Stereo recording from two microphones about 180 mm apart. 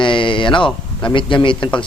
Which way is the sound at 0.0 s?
25° left (ahead or behind).